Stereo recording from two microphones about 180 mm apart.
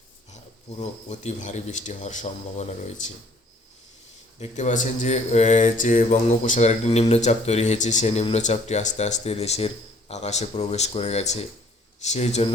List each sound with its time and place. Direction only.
0.8 s speech: 40° left (ahead or behind)
4.4 s speech: 40° left (ahead or behind)